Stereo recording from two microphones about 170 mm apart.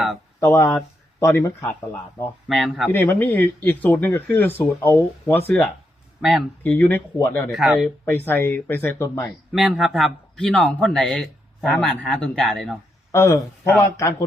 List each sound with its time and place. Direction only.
0.3 s speech: 15° left (ahead or behind)
2.5 s speech: centre (ahead or behind)
2.9 s speech: 10° left (ahead or behind)
6.7 s speech: 10° left (ahead or behind)
7.5 s speech: centre (ahead or behind)
8.0 s speech: 10° left (ahead or behind)
9.6 s speech: centre (ahead or behind)
13.1 s speech: 15° left (ahead or behind)